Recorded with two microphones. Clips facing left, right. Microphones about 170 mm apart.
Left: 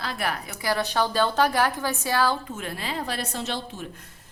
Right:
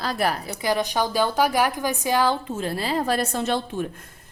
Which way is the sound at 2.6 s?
35° right (ahead or behind).